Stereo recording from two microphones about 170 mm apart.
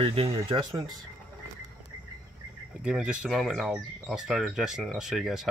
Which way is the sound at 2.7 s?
5° right (ahead or behind).